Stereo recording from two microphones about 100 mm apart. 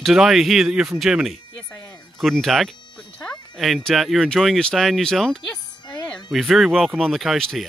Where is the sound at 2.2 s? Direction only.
Centre (ahead or behind).